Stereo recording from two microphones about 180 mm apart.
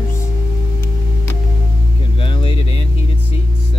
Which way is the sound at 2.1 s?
30° left (ahead or behind).